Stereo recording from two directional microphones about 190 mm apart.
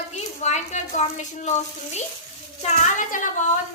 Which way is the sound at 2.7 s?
40° left (ahead or behind).